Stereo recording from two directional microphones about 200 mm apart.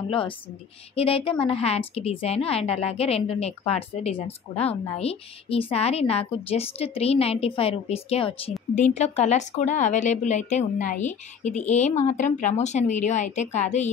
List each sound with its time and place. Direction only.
0.1 s a woman's voice: 25° left (ahead or behind)